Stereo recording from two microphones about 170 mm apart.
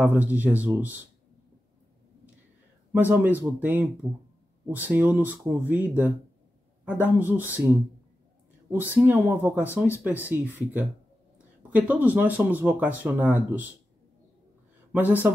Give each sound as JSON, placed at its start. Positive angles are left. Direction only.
{"t": 0.0, "sound": "speech", "side_deg": -10}
{"t": 2.9, "sound": "speech", "side_deg": -10}
{"t": 8.9, "sound": "speech", "side_deg": -10}
{"t": 14.9, "sound": "speech", "side_deg": -10}